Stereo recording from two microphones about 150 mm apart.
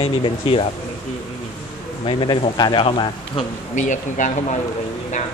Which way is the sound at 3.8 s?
60° left (ahead or behind).